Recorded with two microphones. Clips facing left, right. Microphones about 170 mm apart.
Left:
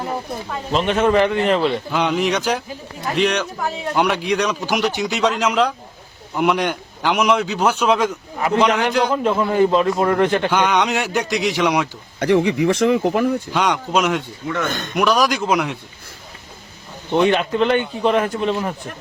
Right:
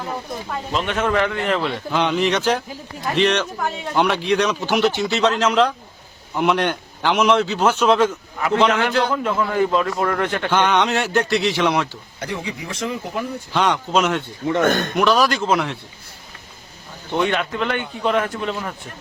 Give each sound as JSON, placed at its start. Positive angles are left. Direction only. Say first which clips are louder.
{"t": 0.7, "sound": "speech", "louder": "left 5 dB", "side_deg": 25}
{"t": 1.9, "sound": "a man's voice", "louder": "even", "side_deg": 5}
{"t": 9.2, "sound": "speech", "louder": "left 3 dB", "side_deg": 25}
{"t": 10.5, "sound": "speech", "louder": "even", "side_deg": 5}
{"t": 12.2, "sound": "speech", "louder": "left 13 dB", "side_deg": 70}
{"t": 13.5, "sound": "speech", "louder": "even", "side_deg": 5}
{"t": 14.6, "sound": "speech", "louder": "right 8 dB", "side_deg": -55}
{"t": 14.9, "sound": "speech", "louder": "left 5 dB", "side_deg": 10}
{"t": 17.2, "sound": "speech", "louder": "left 5 dB", "side_deg": 30}